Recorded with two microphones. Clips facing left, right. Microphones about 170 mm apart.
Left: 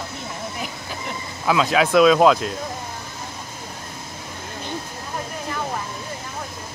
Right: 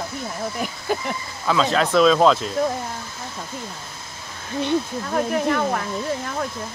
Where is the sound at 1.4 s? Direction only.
5° left (ahead or behind).